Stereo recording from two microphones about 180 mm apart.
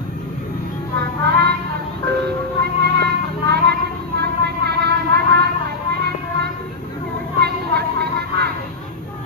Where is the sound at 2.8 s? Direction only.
65° right (ahead or behind).